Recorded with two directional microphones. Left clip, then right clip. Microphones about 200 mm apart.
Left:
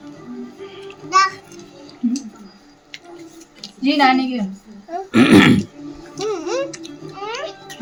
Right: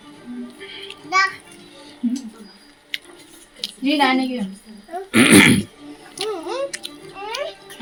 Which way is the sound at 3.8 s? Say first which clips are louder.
Left 3 dB; 20° left (ahead or behind).